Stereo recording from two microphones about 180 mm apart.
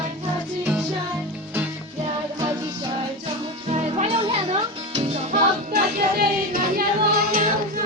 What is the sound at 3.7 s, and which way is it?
Music, 35° right (ahead or behind).